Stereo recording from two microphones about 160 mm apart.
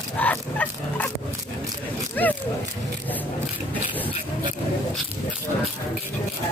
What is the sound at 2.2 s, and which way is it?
Speech, 10° left (ahead or behind).